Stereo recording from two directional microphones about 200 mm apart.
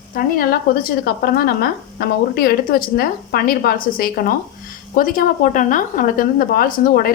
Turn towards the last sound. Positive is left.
turn(degrees=45)  # may be behind; listen again after turning